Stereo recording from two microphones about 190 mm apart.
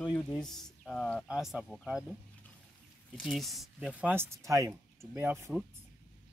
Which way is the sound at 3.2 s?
Centre (ahead or behind).